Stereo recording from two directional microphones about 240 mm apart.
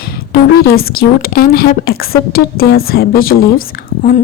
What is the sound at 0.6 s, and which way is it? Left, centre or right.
A woman's voice, left.